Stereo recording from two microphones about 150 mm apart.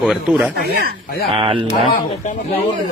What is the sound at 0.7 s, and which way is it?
Speech, 90° right.